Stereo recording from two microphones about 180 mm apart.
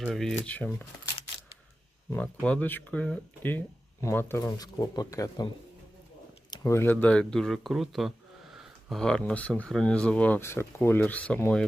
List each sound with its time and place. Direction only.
0.1 s speech: centre (ahead or behind)
2.1 s speech: 5° left (ahead or behind)
6.5 s speech: 20° left (ahead or behind)